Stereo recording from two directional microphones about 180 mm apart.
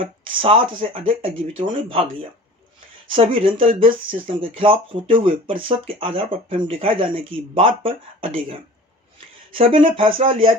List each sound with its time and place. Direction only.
0.0 s speech: 30° right (ahead or behind)
3.1 s speech: 30° right (ahead or behind)